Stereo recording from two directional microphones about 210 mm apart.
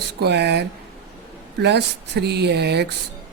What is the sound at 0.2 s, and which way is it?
Speech, 55° right (ahead or behind).